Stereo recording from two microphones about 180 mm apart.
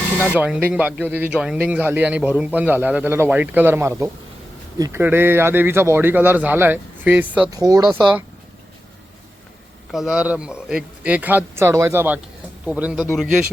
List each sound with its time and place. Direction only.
0.3 s speech: 10° right (ahead or behind)
7.5 s speech: 20° right (ahead or behind)
9.9 s speech: 5° right (ahead or behind)